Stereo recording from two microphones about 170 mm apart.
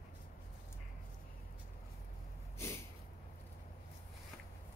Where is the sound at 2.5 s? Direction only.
15° left (ahead or behind).